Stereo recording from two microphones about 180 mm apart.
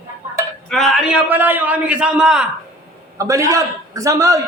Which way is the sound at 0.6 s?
Centre (ahead or behind).